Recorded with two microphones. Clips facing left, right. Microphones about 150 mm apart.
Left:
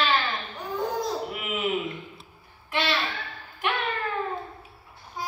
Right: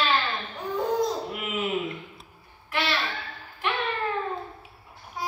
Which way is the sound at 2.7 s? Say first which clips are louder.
Left 1 dB; 25° left (ahead or behind).